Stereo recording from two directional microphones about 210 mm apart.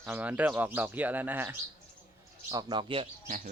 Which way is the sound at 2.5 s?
20° right (ahead or behind).